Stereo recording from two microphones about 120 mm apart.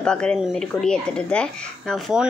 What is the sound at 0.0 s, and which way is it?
A woman's voice, 5° left (ahead or behind).